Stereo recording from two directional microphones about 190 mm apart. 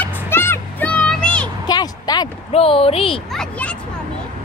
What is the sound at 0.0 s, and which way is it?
Music, 10° left (ahead or behind).